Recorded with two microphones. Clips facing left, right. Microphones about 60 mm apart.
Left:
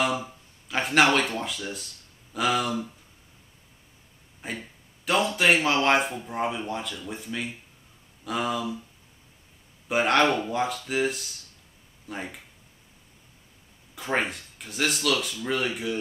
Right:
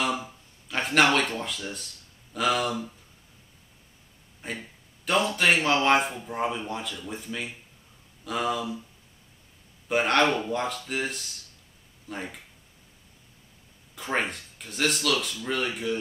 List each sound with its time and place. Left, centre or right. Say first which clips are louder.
0.0 s a man's voice: left 2 dB; centre
4.4 s a man's voice: left 1 dB; centre
9.8 s a man's voice: left 1 dB; centre
13.9 s a man's voice: left 1 dB; centre